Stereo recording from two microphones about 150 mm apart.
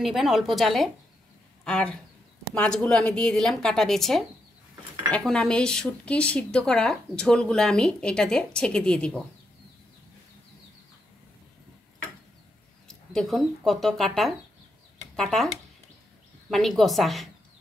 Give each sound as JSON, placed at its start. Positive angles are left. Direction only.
{"t": 0.0, "sound": "speech", "side_deg": 0}
{"t": 12.8, "sound": "speech", "side_deg": 5}